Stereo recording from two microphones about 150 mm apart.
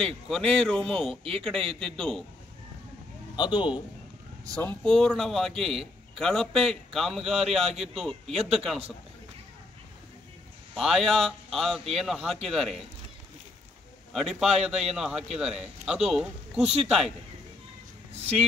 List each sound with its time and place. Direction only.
0.6 s a man's voice: centre (ahead or behind)
3.3 s a man's voice: 30° left (ahead or behind)
4.6 s a man's voice: 10° left (ahead or behind)
10.7 s a man's voice: centre (ahead or behind)
14.1 s a man's voice: centre (ahead or behind)
18.1 s a sound: 45° right (ahead or behind)